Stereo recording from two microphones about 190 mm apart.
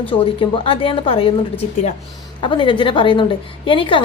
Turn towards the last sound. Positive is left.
turn(degrees=25)  # may be behind; listen again after turning